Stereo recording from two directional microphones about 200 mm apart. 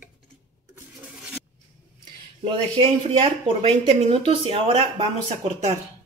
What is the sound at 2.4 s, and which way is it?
Speech, 25° right (ahead or behind).